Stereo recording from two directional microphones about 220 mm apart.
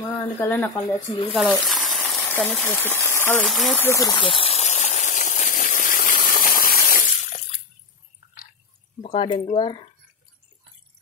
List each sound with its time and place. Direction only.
0.4 s speech: 10° left (ahead or behind)
1.3 s frying: centre (ahead or behind); by 7.4 s 40° left (ahead or behind)
9.0 s speech: 25° left (ahead or behind)